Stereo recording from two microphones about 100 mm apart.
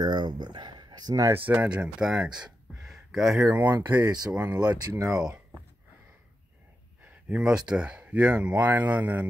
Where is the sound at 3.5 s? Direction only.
15° right (ahead or behind).